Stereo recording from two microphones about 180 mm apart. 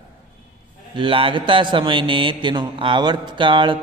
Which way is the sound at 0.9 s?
30° right (ahead or behind).